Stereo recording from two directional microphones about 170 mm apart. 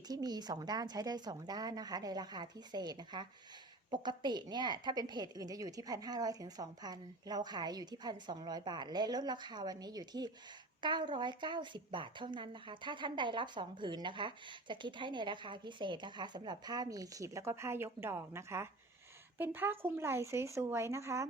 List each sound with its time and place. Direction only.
0.1 s speech: 25° right (ahead or behind)